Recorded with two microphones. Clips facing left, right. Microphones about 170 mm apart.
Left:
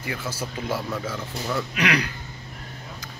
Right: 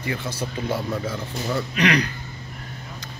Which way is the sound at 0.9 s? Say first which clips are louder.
Right 2 dB; 15° right (ahead or behind).